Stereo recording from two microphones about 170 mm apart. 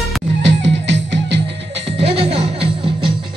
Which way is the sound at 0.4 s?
90° right.